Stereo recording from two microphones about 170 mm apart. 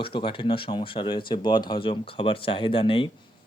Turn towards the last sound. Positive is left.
turn(degrees=30)  # may be behind; listen again after turning